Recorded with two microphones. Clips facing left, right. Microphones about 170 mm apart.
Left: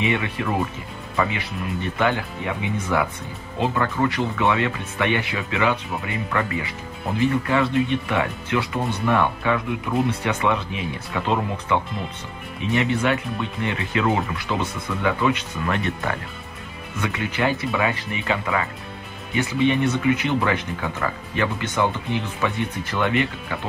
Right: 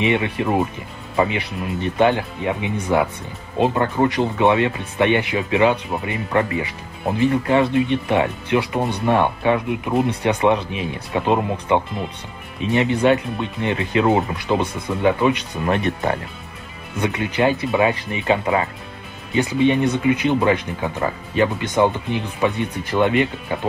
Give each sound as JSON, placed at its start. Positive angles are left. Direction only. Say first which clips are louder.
{"t": 0.0, "sound": "speech", "louder": "right 4 dB", "side_deg": -20}
{"t": 17.1, "sound": "speech", "louder": "right 4 dB", "side_deg": -20}